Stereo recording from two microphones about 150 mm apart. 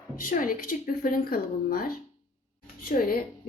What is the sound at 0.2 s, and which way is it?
Speech, 65° left (ahead or behind).